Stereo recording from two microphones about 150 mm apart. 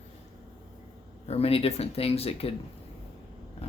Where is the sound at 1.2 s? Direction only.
40° left (ahead or behind).